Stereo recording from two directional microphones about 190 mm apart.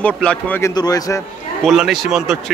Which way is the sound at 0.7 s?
20° left (ahead or behind).